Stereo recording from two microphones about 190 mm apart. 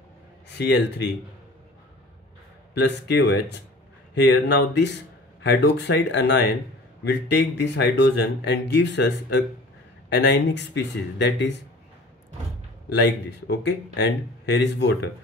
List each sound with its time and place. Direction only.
0.5 s speech: 65° left (ahead or behind)
2.7 s speech: 60° left (ahead or behind)
12.9 s speech: 65° left (ahead or behind)